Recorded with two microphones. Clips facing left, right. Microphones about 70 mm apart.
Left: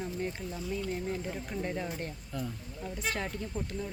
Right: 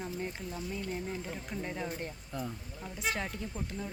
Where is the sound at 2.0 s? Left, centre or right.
Centre.